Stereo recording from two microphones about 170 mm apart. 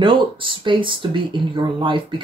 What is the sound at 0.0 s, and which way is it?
Speech, 30° right (ahead or behind).